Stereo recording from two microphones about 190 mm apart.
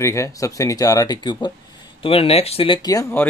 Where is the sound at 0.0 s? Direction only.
15° left (ahead or behind).